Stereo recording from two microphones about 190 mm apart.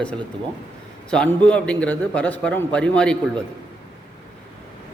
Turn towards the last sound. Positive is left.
turn(degrees=5)  # may be behind; listen again after turning